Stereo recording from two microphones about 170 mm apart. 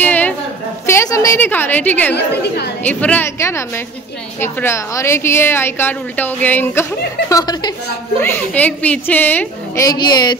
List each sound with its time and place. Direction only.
0.0 s a sound: 10° left (ahead or behind)
0.8 s a woman's voice: 15° left (ahead or behind)
2.1 s a woman's voice: 75° left (ahead or behind)
2.8 s a woman's voice: 10° left (ahead or behind)
8.2 s a woman's voice: 10° left (ahead or behind)
9.8 s speech: 25° left (ahead or behind)